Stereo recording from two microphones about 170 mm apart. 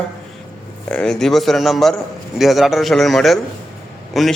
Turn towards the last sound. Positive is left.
turn(degrees=0)  # may be behind; listen again after turning